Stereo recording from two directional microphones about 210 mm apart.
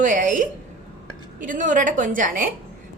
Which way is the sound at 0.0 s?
35° right (ahead or behind).